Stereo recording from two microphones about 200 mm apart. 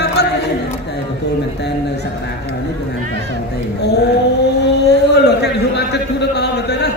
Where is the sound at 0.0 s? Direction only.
55° left (ahead or behind).